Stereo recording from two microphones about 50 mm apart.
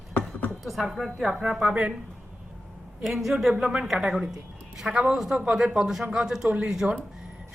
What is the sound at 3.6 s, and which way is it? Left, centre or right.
Speech, centre.